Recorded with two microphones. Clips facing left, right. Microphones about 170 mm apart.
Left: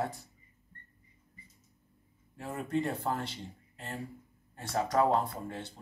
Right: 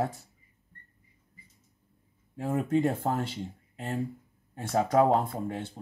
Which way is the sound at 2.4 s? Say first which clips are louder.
Right 7 dB; 50° right (ahead or behind).